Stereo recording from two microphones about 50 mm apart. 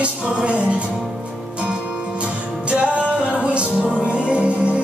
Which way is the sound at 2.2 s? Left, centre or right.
Right.